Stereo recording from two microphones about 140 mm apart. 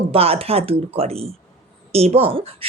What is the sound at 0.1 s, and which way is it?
Speech, 45° right (ahead or behind).